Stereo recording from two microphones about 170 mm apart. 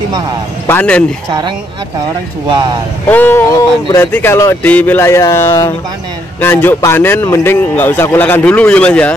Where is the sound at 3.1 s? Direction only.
10° left (ahead or behind).